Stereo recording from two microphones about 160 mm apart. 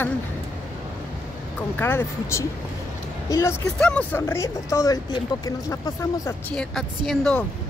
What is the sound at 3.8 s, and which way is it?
Speech, 5° left (ahead or behind).